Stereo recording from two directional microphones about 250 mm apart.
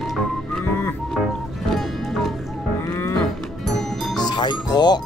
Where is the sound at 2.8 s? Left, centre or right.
Centre.